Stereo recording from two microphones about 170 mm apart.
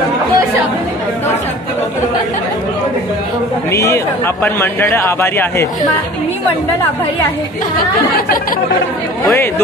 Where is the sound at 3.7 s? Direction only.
15° left (ahead or behind).